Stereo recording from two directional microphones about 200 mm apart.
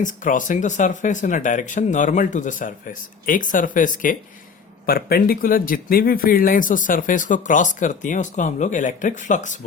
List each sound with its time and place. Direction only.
0.0 s speech: 40° left (ahead or behind)